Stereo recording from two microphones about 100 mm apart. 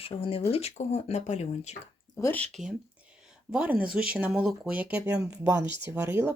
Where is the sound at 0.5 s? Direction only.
90° left.